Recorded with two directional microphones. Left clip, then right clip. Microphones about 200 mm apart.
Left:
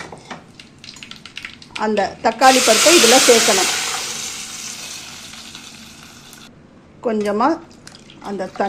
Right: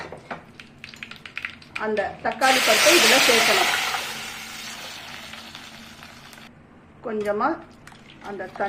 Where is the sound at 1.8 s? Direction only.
45° left (ahead or behind).